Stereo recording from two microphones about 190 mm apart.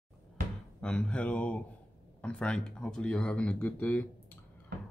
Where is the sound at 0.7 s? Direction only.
5° left (ahead or behind).